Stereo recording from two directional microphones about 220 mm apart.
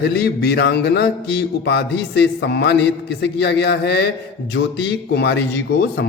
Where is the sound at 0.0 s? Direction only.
50° left (ahead or behind).